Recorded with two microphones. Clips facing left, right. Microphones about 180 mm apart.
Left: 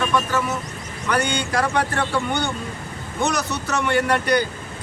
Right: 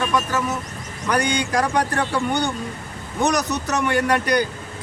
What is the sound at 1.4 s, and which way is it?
Speech, 15° right (ahead or behind).